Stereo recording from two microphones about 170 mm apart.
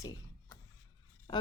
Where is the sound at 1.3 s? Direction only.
30° left (ahead or behind).